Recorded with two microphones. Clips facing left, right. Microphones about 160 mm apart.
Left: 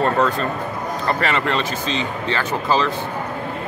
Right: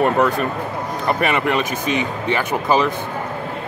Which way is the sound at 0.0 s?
15° right (ahead or behind).